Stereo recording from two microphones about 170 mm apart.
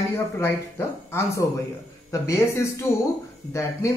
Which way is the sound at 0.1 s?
15° left (ahead or behind).